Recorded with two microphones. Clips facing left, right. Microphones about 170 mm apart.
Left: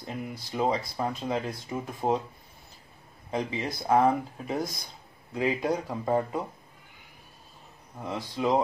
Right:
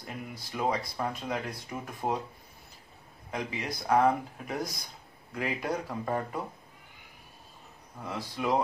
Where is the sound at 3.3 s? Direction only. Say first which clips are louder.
Left 4 dB; 25° left (ahead or behind).